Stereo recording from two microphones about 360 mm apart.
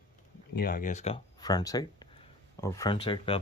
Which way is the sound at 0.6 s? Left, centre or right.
Left.